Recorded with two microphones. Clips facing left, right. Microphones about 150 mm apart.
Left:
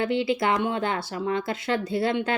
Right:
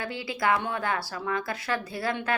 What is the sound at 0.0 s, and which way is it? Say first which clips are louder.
Speech: left 6 dB; 25° left (ahead or behind).